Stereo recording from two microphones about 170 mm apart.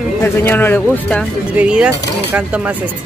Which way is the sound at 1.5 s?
5° right (ahead or behind).